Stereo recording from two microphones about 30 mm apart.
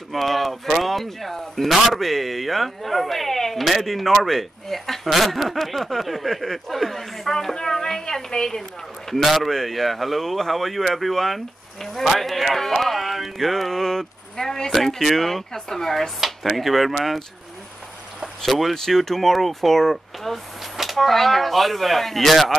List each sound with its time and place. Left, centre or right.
0.1 s speech: centre
7.5 s a woman's voice: centre
9.1 s speech: centre
14.7 s speech: centre
16.3 s speech: centre
18.4 s speech: centre